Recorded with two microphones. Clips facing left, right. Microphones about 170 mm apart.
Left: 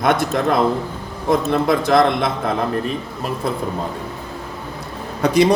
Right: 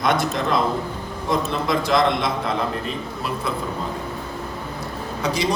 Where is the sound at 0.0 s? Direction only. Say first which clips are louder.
Left 4 dB; 55° left (ahead or behind).